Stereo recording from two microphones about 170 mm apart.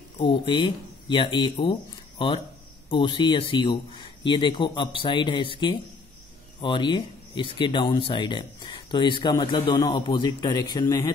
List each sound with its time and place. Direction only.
0.3 s speech: 30° left (ahead or behind)